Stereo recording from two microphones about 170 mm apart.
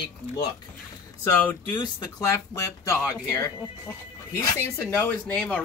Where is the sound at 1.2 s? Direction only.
15° left (ahead or behind).